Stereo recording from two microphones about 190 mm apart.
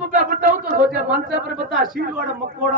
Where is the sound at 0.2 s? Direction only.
45° right (ahead or behind).